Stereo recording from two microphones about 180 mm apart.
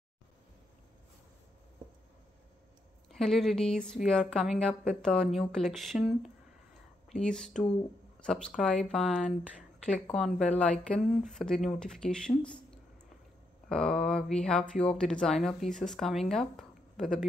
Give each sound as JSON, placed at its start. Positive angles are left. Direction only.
{"t": 3.1, "sound": "speech", "side_deg": 0}
{"t": 13.7, "sound": "speech", "side_deg": 5}